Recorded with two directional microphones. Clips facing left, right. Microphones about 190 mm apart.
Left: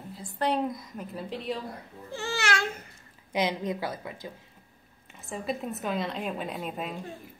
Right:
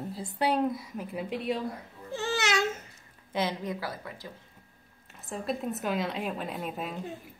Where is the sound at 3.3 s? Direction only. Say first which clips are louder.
Left 2 dB; 15° left (ahead or behind).